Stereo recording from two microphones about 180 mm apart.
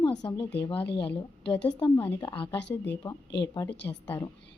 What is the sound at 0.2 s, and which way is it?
Speech, 25° left (ahead or behind).